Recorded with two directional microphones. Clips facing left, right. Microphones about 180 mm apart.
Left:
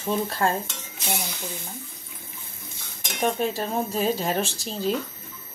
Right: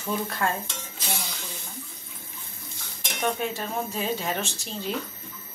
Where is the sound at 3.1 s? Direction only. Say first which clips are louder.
Left 3 dB; 35° left (ahead or behind).